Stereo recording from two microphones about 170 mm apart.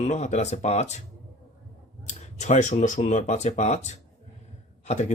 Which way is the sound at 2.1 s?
45° left (ahead or behind).